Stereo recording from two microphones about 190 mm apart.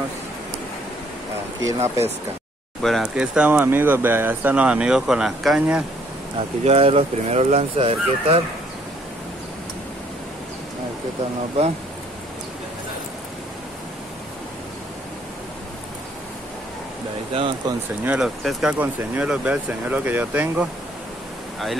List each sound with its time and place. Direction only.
1.7 s speech: 15° right (ahead or behind)
2.8 s speech: centre (ahead or behind)
6.6 s speech: 30° right (ahead or behind)
17.3 s speech: 25° right (ahead or behind)
18.0 s speech: 5° right (ahead or behind)